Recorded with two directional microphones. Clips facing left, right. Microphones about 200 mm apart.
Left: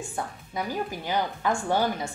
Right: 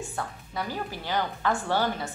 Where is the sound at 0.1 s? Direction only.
15° left (ahead or behind).